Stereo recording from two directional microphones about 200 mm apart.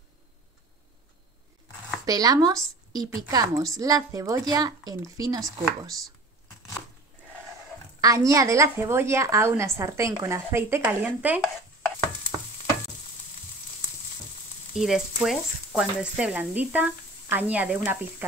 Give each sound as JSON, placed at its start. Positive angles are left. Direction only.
{"t": 2.0, "sound": "a woman's voice", "side_deg": -20}
{"t": 8.0, "sound": "a woman's voice", "side_deg": -15}
{"t": 14.8, "sound": "speech", "side_deg": 0}